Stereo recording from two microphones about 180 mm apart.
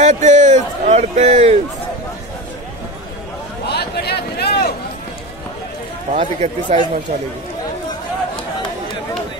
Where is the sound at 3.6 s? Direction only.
65° left (ahead or behind).